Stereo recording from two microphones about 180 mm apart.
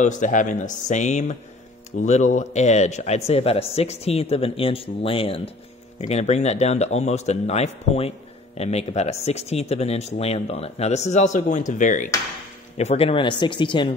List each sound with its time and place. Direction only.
0.0 s speech: 45° left (ahead or behind); by 13.9 s 25° left (ahead or behind)